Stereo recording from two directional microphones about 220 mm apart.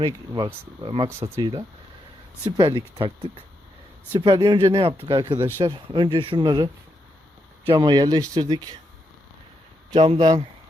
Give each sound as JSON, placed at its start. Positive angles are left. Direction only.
{"t": 0.0, "sound": "speech", "side_deg": -20}
{"t": 4.2, "sound": "speech", "side_deg": -20}
{"t": 7.7, "sound": "speech", "side_deg": -20}
{"t": 9.9, "sound": "speech", "side_deg": -25}